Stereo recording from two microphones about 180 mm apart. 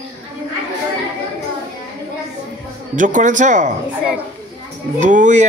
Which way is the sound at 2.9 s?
45° right (ahead or behind).